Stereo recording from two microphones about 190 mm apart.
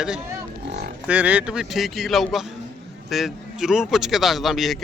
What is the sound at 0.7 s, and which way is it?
Livestock, 60° right (ahead or behind).